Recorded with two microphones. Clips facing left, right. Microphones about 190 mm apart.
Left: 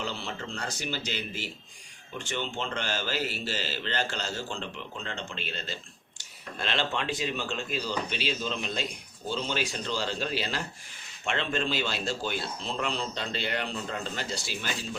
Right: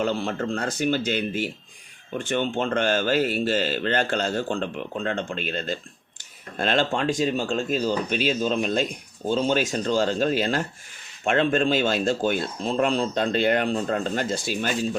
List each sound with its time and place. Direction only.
0.0 s speech: 55° right (ahead or behind)